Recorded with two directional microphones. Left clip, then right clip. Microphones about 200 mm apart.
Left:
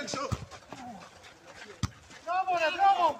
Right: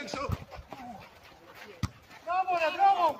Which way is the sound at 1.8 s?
10° right (ahead or behind).